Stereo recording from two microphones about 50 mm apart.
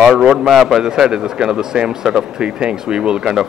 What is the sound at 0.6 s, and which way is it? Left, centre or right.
Speech, centre.